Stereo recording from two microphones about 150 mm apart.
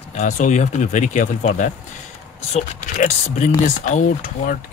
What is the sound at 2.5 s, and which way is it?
Speech, 50° left (ahead or behind).